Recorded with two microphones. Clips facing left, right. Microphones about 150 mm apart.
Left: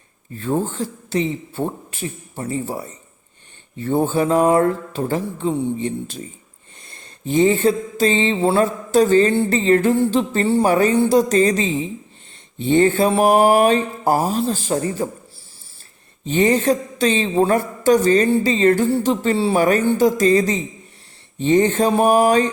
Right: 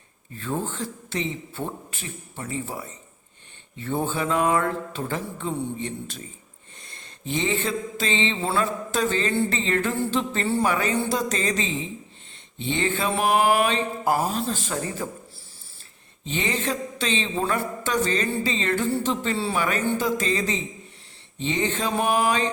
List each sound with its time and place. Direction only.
0.3 s a woman's voice: 35° left (ahead or behind)
16.2 s a woman's voice: 45° left (ahead or behind)